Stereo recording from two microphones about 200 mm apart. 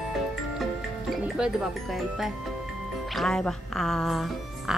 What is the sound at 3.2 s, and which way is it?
Speech, centre (ahead or behind).